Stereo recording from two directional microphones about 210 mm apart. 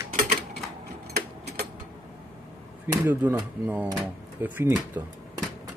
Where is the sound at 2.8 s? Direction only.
10° right (ahead or behind).